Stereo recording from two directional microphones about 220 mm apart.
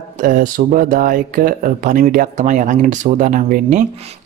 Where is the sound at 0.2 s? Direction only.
40° right (ahead or behind).